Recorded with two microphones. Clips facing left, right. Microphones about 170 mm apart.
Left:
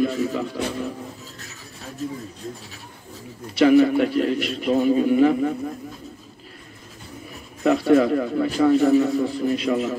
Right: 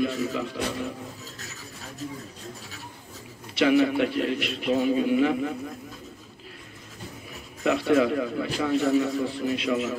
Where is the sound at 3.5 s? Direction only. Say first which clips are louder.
Left 6 dB; 40° left (ahead or behind).